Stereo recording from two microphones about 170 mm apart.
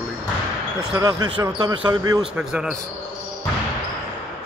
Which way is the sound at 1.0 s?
25° right (ahead or behind).